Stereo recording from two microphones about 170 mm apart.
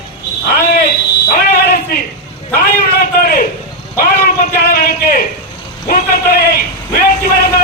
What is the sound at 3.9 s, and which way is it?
A man's voice, 60° left (ahead or behind).